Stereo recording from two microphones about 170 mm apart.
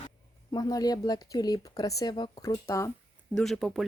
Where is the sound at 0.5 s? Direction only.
20° left (ahead or behind).